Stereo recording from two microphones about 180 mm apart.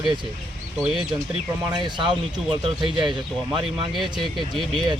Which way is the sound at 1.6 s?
25° right (ahead or behind).